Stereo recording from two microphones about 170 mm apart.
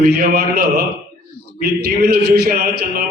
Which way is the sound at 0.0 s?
60° right (ahead or behind).